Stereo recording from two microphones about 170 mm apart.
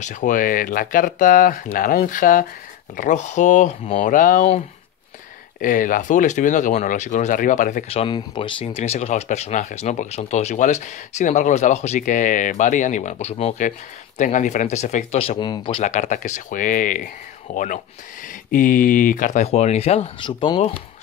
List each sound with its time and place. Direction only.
0.0 s speech: 50° left (ahead or behind)
5.6 s speech: 50° left (ahead or behind)
7.9 s speech: 35° left (ahead or behind)
15.8 s speech: 45° left (ahead or behind); by 20.7 s 30° left (ahead or behind)